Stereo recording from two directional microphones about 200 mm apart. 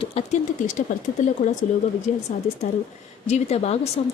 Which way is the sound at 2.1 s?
35° left (ahead or behind).